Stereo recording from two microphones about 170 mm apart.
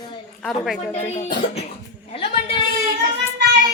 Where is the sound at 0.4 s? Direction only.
Centre (ahead or behind).